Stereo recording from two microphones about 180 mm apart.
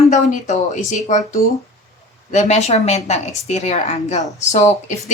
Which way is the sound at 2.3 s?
40° left (ahead or behind).